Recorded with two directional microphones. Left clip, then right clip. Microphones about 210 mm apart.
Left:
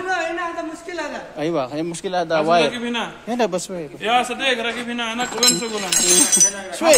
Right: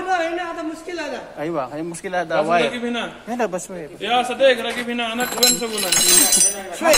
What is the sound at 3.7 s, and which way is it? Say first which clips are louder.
Speech: left 2 dB; 45° left (ahead or behind).